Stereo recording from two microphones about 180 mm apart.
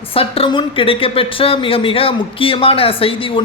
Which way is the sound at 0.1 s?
30° left (ahead or behind).